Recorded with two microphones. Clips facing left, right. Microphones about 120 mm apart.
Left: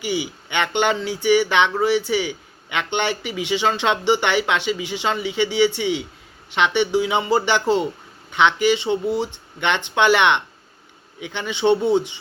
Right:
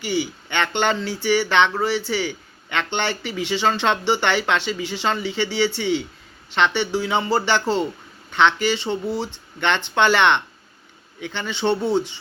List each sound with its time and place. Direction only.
0.0 s speech: 10° left (ahead or behind)